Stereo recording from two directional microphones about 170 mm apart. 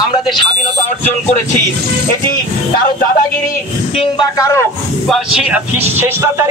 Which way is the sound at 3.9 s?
30° left (ahead or behind).